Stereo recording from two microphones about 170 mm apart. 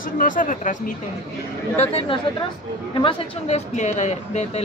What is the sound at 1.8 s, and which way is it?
A woman's voice, 35° left (ahead or behind).